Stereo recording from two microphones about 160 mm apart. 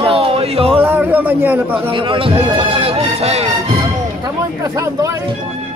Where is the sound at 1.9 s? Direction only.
30° right (ahead or behind).